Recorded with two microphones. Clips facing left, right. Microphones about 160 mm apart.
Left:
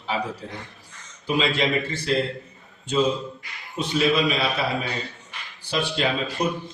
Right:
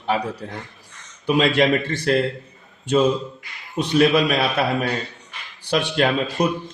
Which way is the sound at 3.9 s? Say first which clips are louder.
Right 5 dB; 60° right (ahead or behind).